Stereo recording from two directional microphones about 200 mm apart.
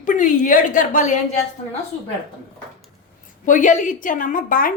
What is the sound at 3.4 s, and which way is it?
A woman's voice, 40° left (ahead or behind).